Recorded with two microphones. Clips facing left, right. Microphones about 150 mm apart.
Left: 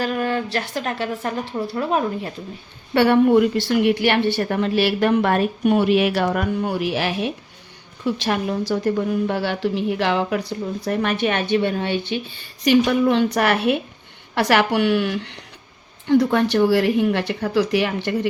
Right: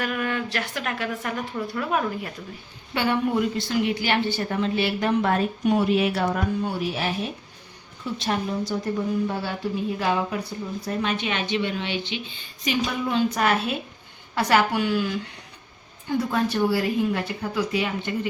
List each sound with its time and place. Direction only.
0.0 s a woman's voice: 35° left (ahead or behind)
2.9 s a woman's voice: 60° left (ahead or behind)
12.6 s a woman's voice: 65° left (ahead or behind)